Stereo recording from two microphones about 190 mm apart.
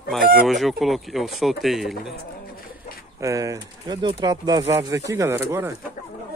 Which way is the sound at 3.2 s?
15° right (ahead or behind).